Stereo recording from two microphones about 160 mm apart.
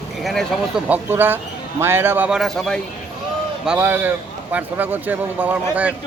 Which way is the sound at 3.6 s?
10° right (ahead or behind).